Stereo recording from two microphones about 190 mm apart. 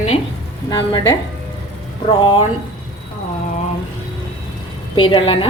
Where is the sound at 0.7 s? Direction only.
25° left (ahead or behind).